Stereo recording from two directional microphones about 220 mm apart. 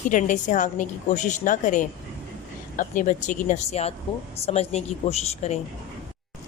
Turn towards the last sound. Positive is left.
turn(degrees=30)  # may be behind; listen again after turning